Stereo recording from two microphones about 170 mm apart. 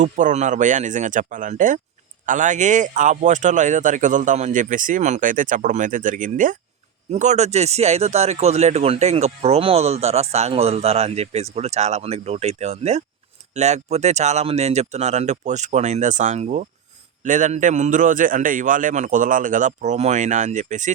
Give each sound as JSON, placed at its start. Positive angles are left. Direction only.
{"t": 0.0, "sound": "a man's voice", "side_deg": -45}